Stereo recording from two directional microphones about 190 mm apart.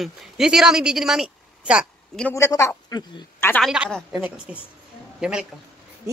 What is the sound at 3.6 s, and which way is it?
Speech, 5° right (ahead or behind).